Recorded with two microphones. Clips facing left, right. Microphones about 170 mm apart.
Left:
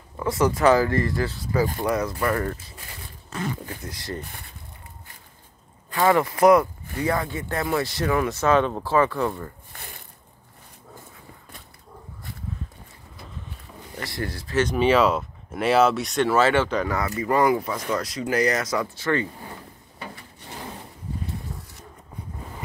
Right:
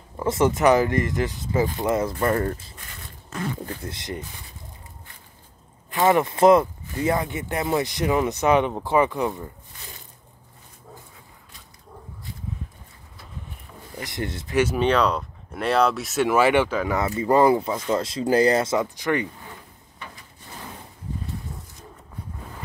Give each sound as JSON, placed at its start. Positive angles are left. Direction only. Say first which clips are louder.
{"t": 0.2, "sound": "speech", "louder": "right 1 dB", "side_deg": -25}
{"t": 3.8, "sound": "speech", "louder": "right 1 dB", "side_deg": -20}
{"t": 5.9, "sound": "speech", "louder": "right 1 dB", "side_deg": -20}
{"t": 14.0, "sound": "speech", "louder": "right 1 dB", "side_deg": -20}
{"t": 14.8, "sound": "speech", "louder": "left 2 dB", "side_deg": 5}
{"t": 16.3, "sound": "speech", "louder": "right 2 dB", "side_deg": -15}
{"t": 16.9, "sound": "speech", "louder": "right 7 dB", "side_deg": -25}